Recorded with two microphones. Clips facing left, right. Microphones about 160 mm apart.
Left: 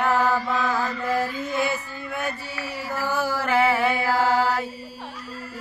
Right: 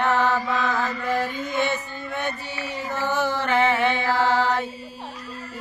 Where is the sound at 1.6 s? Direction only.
5° left (ahead or behind).